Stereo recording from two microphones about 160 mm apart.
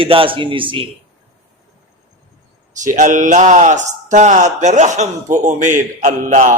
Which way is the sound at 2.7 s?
55° right (ahead or behind).